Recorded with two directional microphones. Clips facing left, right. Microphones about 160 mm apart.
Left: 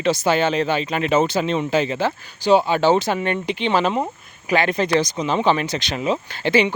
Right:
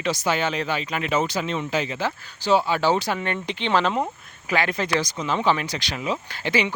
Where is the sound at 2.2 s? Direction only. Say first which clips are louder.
Left 4 dB; 15° left (ahead or behind).